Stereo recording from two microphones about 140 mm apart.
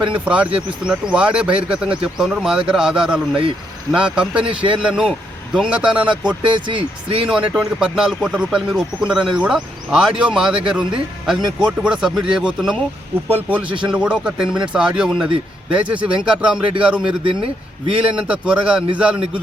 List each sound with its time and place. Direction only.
0.0 s speech: 10° right (ahead or behind)
6.4 s a man's voice: 35° right (ahead or behind)
7.3 s speech: 5° right (ahead or behind)
17.2 s a man's voice: 40° right (ahead or behind)
18.2 s speech: 10° right (ahead or behind)